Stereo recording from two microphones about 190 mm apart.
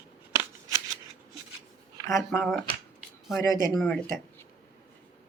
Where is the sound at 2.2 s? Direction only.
Centre (ahead or behind).